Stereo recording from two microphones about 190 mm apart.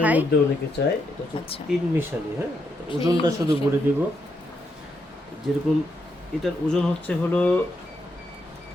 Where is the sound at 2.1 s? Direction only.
10° right (ahead or behind).